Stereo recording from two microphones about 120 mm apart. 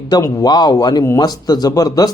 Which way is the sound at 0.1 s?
30° left (ahead or behind).